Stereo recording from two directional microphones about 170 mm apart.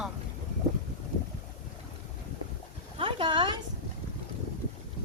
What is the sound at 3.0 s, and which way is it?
Speech, 30° right (ahead or behind).